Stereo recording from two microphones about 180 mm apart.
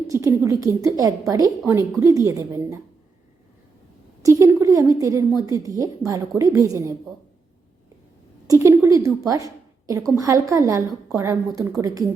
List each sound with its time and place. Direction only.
0.1 s a woman's voice: 15° right (ahead or behind)
4.2 s a woman's voice: 15° right (ahead or behind)
8.4 s a woman's voice: 15° right (ahead or behind)